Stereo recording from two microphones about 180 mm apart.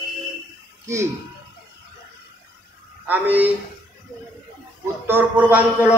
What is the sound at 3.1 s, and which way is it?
Speech, 10° right (ahead or behind).